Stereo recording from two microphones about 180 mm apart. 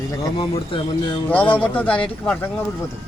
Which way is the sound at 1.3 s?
10° left (ahead or behind).